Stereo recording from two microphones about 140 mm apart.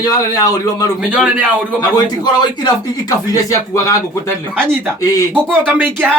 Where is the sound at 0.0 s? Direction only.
25° left (ahead or behind).